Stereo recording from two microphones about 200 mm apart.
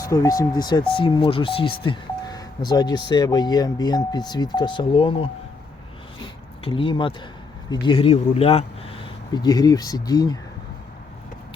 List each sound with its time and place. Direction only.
0.0 s speech: 15° left (ahead or behind)
6.1 s a sound: 25° left (ahead or behind)
7.7 s speech: 25° left (ahead or behind)